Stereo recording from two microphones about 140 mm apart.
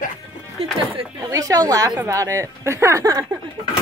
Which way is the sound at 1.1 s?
25° right (ahead or behind).